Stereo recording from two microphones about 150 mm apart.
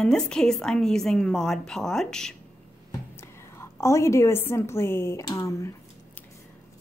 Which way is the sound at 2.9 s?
15° left (ahead or behind).